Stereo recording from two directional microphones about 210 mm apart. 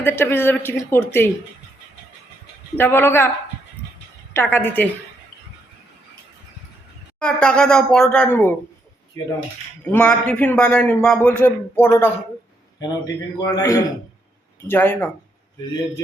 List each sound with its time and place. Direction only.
0.0 s a man's voice: 10° left (ahead or behind)
2.7 s a man's voice: 10° left (ahead or behind)
4.4 s a man's voice: 10° left (ahead or behind)
7.2 s speech: 5° left (ahead or behind)
9.8 s a man's voice: 5° left (ahead or behind)
13.4 s a man's voice: 15° left (ahead or behind)